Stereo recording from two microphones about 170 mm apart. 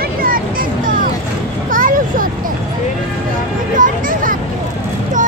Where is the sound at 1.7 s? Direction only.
55° right (ahead or behind).